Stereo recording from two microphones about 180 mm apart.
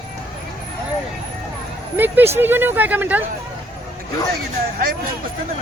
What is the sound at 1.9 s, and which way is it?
Speech, 10° right (ahead or behind).